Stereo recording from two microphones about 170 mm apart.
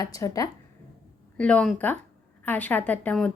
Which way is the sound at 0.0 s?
20° left (ahead or behind).